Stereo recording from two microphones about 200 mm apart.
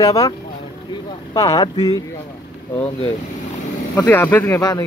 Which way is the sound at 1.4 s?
20° left (ahead or behind).